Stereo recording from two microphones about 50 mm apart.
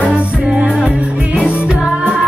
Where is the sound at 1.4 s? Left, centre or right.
Centre.